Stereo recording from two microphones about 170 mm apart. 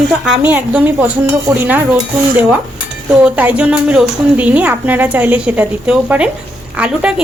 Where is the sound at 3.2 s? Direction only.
10° right (ahead or behind).